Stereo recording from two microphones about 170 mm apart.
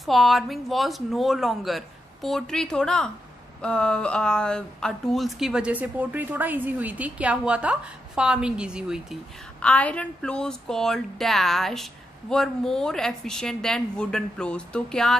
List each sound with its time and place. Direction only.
0.0 s speech: centre (ahead or behind)
9.6 s speech: 5° left (ahead or behind)